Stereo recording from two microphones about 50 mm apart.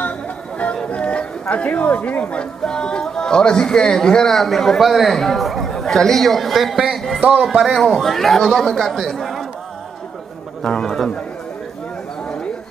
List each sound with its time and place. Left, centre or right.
0.8 s a sound: left
1.5 s speech: left
2.6 s speech: centre
7.2 s speech: right
7.4 s a man's voice: centre
10.6 s speech: centre